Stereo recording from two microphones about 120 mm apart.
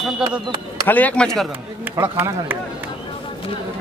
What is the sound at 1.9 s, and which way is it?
Speech, 25° right (ahead or behind).